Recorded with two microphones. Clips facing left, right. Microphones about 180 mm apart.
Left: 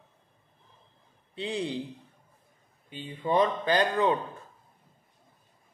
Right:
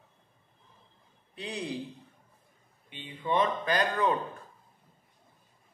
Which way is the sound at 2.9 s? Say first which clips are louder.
Left 3 dB; 40° left (ahead or behind).